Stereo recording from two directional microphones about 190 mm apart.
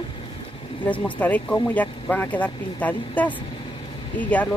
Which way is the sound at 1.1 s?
10° left (ahead or behind).